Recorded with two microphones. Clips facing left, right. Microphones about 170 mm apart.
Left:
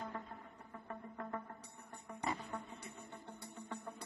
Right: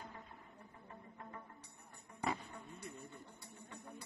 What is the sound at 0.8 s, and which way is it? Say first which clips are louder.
Music: left 8 dB; 85° left.